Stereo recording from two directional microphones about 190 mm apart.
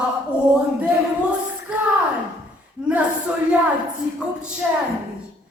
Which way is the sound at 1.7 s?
5° right (ahead or behind).